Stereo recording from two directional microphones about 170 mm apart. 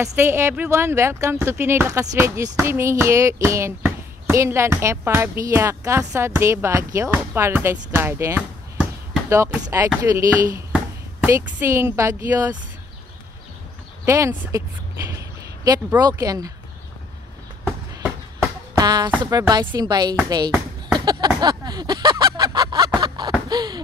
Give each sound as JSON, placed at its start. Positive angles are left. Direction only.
{"t": 0.0, "sound": "speech", "side_deg": -15}
{"t": 14.0, "sound": "speech", "side_deg": -15}
{"t": 15.1, "sound": "a sound", "side_deg": -20}
{"t": 16.0, "sound": "speech", "side_deg": -20}
{"t": 18.8, "sound": "speech", "side_deg": -25}
{"t": 21.0, "sound": "a sound", "side_deg": -25}
{"t": 23.5, "sound": "speech", "side_deg": -25}